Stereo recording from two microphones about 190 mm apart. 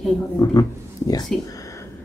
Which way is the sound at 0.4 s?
20° left (ahead or behind).